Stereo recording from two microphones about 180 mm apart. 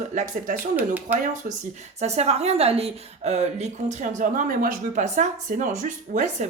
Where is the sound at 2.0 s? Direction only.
35° right (ahead or behind).